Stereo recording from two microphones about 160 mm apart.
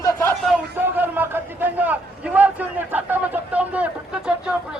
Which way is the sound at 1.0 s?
10° right (ahead or behind).